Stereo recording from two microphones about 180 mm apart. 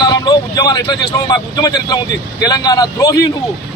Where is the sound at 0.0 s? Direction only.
25° left (ahead or behind).